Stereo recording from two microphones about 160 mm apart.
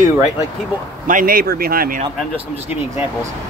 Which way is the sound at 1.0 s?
60° right (ahead or behind).